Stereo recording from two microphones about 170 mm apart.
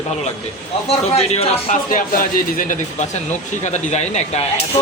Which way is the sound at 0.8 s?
35° left (ahead or behind).